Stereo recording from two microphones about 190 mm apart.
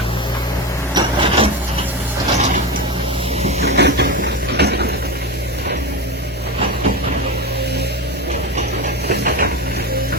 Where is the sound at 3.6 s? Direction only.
60° right (ahead or behind).